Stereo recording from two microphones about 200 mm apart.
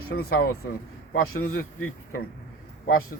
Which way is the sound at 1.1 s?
90° left.